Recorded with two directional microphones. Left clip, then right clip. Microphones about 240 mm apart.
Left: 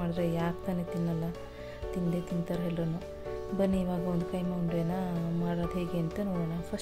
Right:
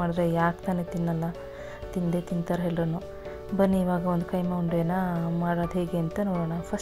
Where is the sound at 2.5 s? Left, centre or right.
Centre.